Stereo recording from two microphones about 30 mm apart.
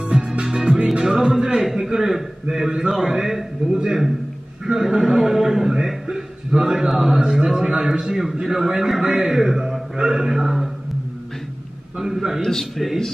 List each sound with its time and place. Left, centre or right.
0.0 s music: right
1.0 s a sound: centre
2.5 s a man's voice: centre
3.6 s a man's voice: right
6.0 s a man's voice: right
8.1 s a man's voice: centre
9.0 s a man's voice: right
9.3 s a man's voice: centre
12.0 s a man's voice: centre
12.4 s speech: centre
12.7 s speech: centre